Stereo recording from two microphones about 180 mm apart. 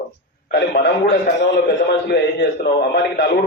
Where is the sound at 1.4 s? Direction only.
70° left (ahead or behind).